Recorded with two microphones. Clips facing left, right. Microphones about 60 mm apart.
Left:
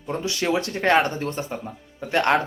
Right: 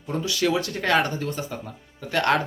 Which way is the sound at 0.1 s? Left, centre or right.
Left.